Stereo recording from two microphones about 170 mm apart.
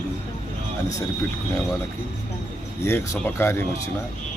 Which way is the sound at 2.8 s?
15° left (ahead or behind).